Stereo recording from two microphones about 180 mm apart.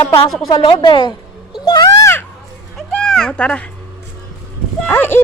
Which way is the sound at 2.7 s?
5° left (ahead or behind).